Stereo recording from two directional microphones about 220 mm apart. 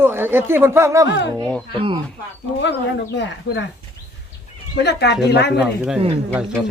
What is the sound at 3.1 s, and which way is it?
Speech, 55° left (ahead or behind).